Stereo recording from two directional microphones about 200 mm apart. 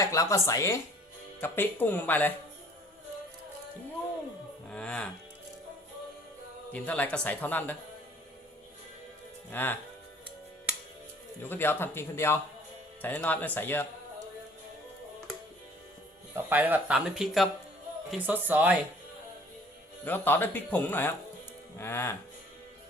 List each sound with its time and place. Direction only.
0.0 s speech: 15° left (ahead or behind)
4.7 s speech: 5° left (ahead or behind)
6.7 s speech: 5° left (ahead or behind)
9.5 s speech: 10° left (ahead or behind)
11.4 s speech: 10° left (ahead or behind)
16.3 s speech: 10° right (ahead or behind)
20.1 s speech: 10° left (ahead or behind)